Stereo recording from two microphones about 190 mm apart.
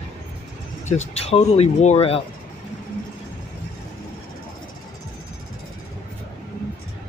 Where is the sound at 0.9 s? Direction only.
35° left (ahead or behind).